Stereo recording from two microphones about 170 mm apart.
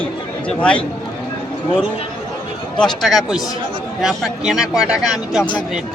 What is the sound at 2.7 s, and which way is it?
A man's voice, centre (ahead or behind).